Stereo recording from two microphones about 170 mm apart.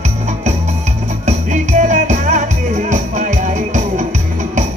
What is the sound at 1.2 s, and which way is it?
Music, 45° right (ahead or behind).